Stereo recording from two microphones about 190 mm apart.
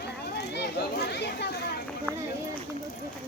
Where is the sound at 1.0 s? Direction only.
60° left (ahead or behind).